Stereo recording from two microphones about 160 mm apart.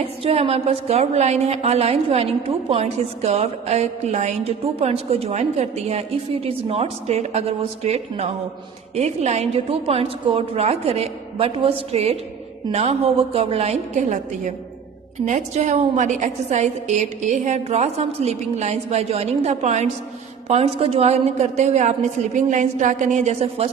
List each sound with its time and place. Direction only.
0.2 s a woman's voice: 35° right (ahead or behind)